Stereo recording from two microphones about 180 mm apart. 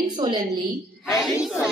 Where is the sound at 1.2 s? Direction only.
5° right (ahead or behind).